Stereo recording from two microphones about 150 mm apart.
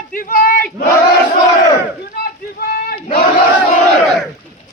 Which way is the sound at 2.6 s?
90° left.